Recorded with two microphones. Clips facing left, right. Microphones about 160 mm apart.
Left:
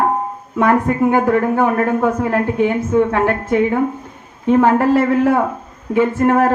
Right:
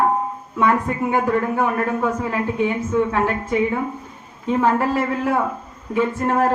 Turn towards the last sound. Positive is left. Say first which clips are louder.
# left 5 dB
turn(degrees=55)  # may be behind; listen again after turning